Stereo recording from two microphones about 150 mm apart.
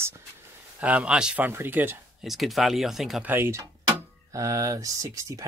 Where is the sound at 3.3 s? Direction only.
15° right (ahead or behind).